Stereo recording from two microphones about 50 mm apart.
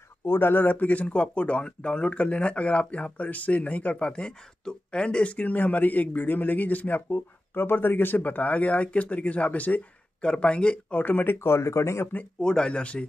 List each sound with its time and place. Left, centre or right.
0.2 s speech: left
4.0 s speech: centre; by 7.0 s left
7.1 s speech: left
11.0 s speech: left
11.3 s speech: left
12.4 s speech: centre